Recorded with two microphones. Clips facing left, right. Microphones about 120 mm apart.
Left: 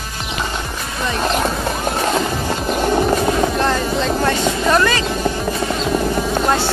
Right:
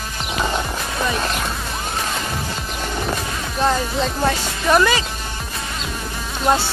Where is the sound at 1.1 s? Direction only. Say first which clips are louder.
Left 5 dB; 30° left (ahead or behind).